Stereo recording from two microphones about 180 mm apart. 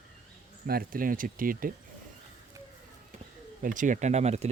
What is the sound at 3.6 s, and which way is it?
Speech, 45° right (ahead or behind).